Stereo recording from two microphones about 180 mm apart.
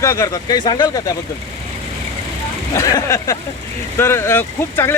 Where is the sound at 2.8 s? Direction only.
20° left (ahead or behind).